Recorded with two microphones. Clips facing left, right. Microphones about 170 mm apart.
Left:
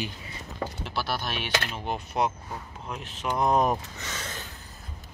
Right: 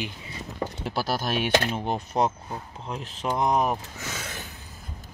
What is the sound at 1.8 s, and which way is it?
Speech, 35° right (ahead or behind).